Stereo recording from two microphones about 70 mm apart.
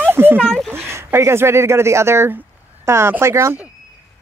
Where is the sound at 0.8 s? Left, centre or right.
Right.